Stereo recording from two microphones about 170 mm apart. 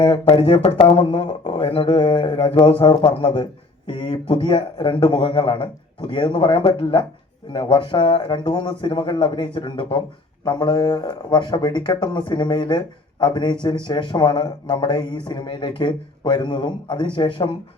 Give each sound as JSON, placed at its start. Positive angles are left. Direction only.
{"t": 0.0, "sound": "speech", "side_deg": 35}